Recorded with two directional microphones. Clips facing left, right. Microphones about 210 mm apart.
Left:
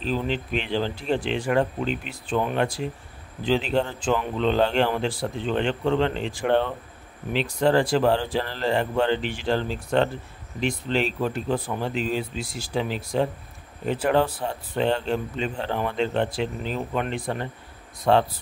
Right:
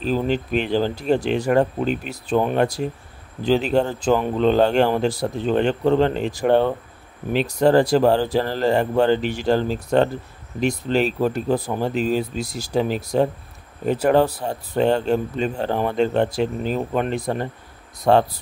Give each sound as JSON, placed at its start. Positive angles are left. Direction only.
{"t": 0.0, "sound": "speech", "side_deg": -45}